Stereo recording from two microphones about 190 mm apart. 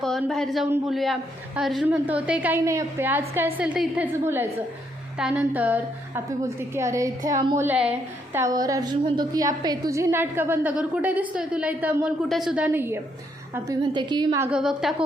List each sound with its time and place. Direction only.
0.0 s a woman's voice: centre (ahead or behind)
13.7 s a woman's voice: 25° right (ahead or behind)
14.5 s a woman's voice: 5° right (ahead or behind)